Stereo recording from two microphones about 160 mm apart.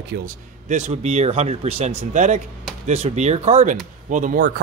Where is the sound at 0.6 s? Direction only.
50° right (ahead or behind).